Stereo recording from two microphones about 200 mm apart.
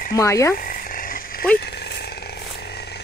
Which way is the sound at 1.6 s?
55° left (ahead or behind).